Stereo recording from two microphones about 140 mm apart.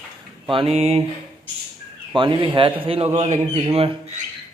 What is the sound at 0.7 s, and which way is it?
Speech, 45° right (ahead or behind).